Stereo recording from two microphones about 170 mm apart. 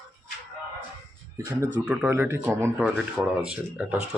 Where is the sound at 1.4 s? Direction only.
15° right (ahead or behind).